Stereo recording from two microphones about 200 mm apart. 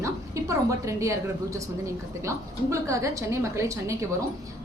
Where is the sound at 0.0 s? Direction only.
15° right (ahead or behind).